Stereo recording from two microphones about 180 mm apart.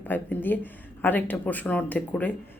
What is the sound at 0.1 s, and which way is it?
Speech, 10° left (ahead or behind).